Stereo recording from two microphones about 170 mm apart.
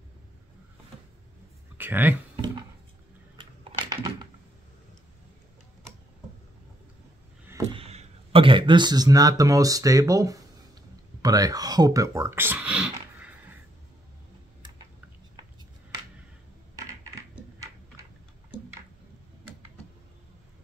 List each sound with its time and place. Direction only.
1.8 s speech: 10° right (ahead or behind)
3.3 s typing: 25° right (ahead or behind)
7.7 s speech: 35° right (ahead or behind); by 12.9 s 5° right (ahead or behind)